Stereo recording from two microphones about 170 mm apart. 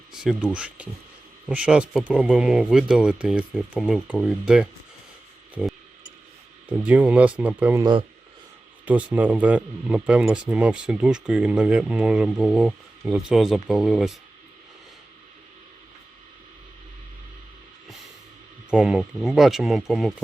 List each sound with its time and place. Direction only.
0.1 s speech: 5° right (ahead or behind)
6.7 s speech: 10° right (ahead or behind)
7.8 s speech: 25° right (ahead or behind)
8.8 s speech: 10° right (ahead or behind)
18.7 s speech: 5° right (ahead or behind)